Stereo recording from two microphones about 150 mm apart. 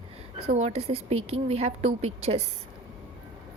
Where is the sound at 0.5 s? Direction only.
45° right (ahead or behind).